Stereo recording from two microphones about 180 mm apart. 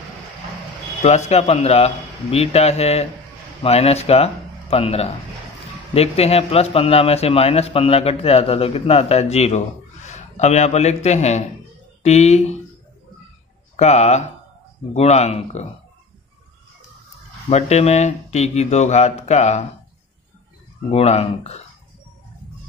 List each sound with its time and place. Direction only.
1.0 s a man's voice: 40° left (ahead or behind)
13.7 s a man's voice: 40° left (ahead or behind)
17.5 s a man's voice: 35° left (ahead or behind)
20.9 s a man's voice: 35° left (ahead or behind)